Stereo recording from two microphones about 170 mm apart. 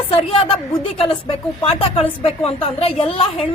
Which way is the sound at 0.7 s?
30° left (ahead or behind).